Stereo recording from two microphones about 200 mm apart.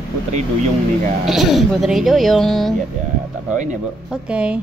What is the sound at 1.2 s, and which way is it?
A woman's voice, centre (ahead or behind).